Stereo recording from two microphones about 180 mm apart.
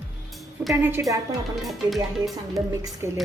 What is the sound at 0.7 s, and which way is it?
Speech, 10° right (ahead or behind).